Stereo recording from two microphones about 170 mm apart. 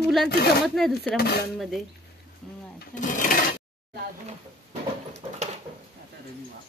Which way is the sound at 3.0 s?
50° left (ahead or behind).